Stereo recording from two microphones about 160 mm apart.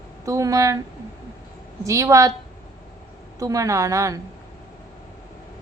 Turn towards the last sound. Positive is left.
turn(degrees=-20)  # may be behind; listen again after turning